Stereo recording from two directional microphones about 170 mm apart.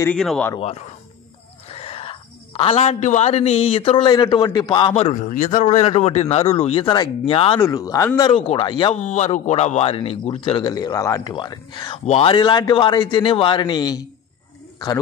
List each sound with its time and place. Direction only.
0.0 s speech: 5° left (ahead or behind)
0.6 s speech: 35° left (ahead or behind)
5.1 s speech: 50° left (ahead or behind); by 7.6 s 35° left (ahead or behind)
7.6 s speech: 20° left (ahead or behind)
9.0 s speech: 45° left (ahead or behind); by 14.0 s 25° left (ahead or behind)